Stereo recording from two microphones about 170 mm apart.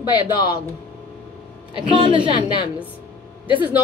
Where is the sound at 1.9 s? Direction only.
30° right (ahead or behind).